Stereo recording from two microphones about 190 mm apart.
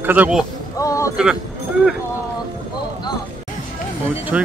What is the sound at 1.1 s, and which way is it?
Speech, 5° right (ahead or behind).